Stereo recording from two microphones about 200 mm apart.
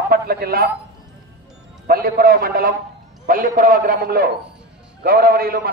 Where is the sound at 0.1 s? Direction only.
50° right (ahead or behind).